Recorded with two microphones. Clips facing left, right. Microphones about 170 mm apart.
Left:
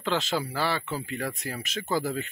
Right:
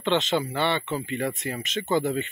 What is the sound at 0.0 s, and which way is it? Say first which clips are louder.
Speech: right 4 dB; centre (ahead or behind).